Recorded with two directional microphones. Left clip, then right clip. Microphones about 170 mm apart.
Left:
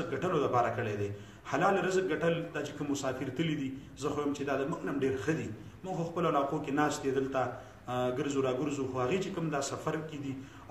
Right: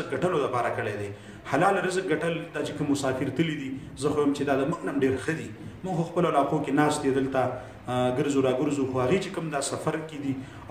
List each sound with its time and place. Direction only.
0.1 s a man's voice: 5° right (ahead or behind)